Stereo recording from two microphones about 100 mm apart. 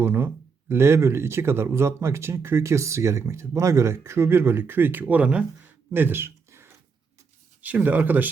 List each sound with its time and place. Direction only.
0.0 s speech: 25° right (ahead or behind)